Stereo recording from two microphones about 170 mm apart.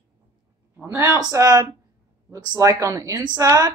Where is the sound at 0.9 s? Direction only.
15° right (ahead or behind).